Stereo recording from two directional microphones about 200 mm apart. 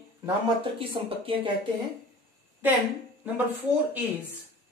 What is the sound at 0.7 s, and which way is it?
Speech, 25° right (ahead or behind).